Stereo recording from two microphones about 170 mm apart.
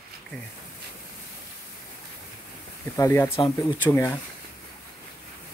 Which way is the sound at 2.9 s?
15° left (ahead or behind).